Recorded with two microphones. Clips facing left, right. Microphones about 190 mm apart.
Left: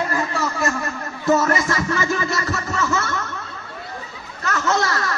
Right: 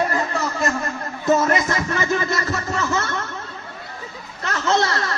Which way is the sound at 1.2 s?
20° right (ahead or behind).